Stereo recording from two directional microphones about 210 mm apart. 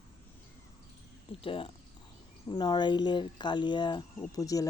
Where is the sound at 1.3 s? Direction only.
25° left (ahead or behind).